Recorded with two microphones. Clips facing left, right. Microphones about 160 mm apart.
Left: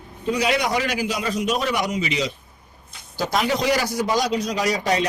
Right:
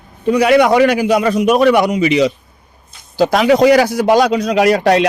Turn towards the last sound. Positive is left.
turn(degrees=-70)  # may be behind; listen again after turning